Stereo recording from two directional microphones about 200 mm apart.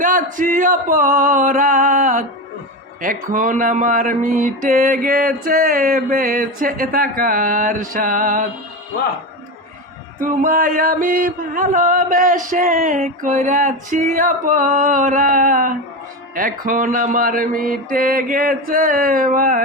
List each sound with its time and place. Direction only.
0.0 s chant: 40° right (ahead or behind)
3.0 s music: 40° right (ahead or behind)
10.2 s chant: 45° right (ahead or behind)
16.3 s music: 45° right (ahead or behind)